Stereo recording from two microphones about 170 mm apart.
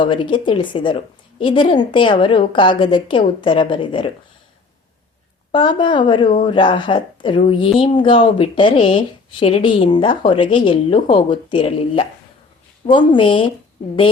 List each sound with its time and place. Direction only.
0.0 s speech: 30° left (ahead or behind)
5.5 s speech: 30° left (ahead or behind)